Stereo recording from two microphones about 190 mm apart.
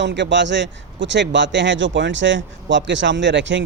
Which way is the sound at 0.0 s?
65° right (ahead or behind).